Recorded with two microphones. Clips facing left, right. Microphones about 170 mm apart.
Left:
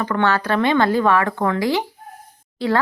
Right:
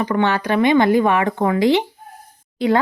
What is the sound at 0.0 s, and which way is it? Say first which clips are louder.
Speech: right 1 dB; 15° right (ahead or behind).